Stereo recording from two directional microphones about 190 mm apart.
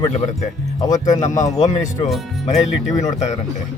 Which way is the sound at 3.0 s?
40° left (ahead or behind).